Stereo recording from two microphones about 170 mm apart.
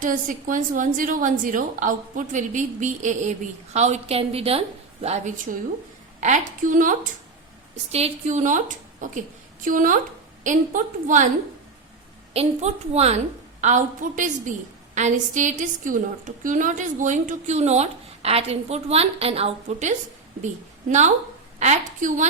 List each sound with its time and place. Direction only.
0.0 s a woman's voice: 50° right (ahead or behind)
7.9 s a woman's voice: 40° right (ahead or behind)
12.3 s a woman's voice: 40° right (ahead or behind)
21.6 s a woman's voice: 45° right (ahead or behind)